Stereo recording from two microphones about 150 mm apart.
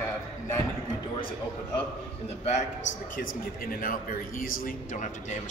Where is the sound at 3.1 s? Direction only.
65° left (ahead or behind).